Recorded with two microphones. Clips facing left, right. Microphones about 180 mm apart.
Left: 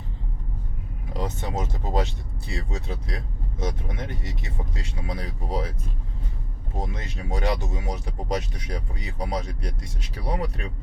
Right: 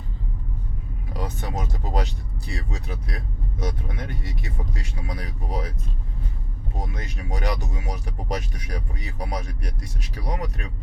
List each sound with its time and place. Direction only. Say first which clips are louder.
1.1 s speech: left 2 dB; 25° left (ahead or behind)
6.7 s speech: left 2 dB; 25° left (ahead or behind)